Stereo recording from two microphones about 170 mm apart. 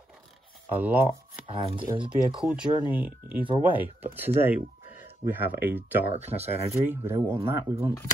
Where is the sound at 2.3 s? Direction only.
5° right (ahead or behind).